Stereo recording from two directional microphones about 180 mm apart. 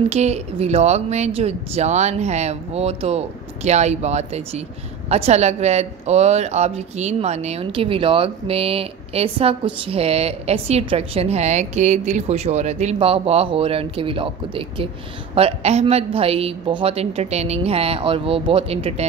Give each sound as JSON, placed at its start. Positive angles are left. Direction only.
{"t": 0.1, "sound": "a woman's voice", "side_deg": -35}